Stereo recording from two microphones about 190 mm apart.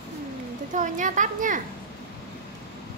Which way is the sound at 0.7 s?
40° right (ahead or behind).